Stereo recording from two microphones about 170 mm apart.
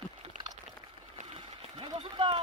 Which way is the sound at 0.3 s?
50° right (ahead or behind).